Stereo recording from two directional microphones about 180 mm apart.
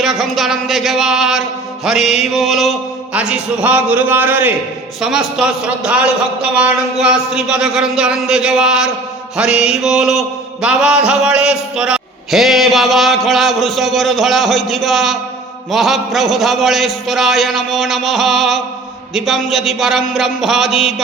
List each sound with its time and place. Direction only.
0.0 s mantra: centre (ahead or behind)